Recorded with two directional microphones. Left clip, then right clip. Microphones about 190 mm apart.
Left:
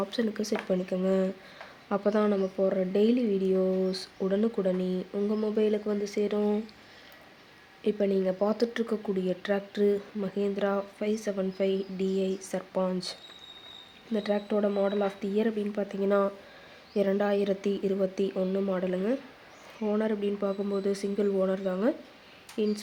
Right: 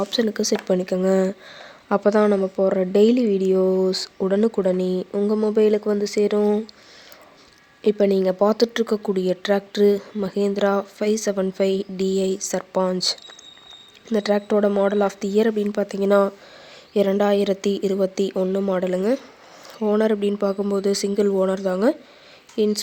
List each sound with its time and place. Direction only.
0.0 s speech: 40° right (ahead or behind)
7.9 s speech: 45° right (ahead or behind)